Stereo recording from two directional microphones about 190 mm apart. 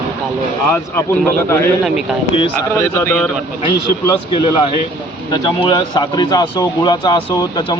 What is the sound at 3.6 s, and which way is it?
A man's voice, 25° left (ahead or behind).